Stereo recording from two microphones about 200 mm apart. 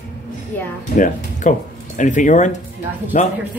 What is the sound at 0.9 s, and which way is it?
A man's voice, 40° left (ahead or behind).